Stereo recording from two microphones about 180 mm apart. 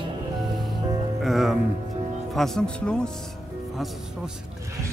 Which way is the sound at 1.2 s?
Centre (ahead or behind).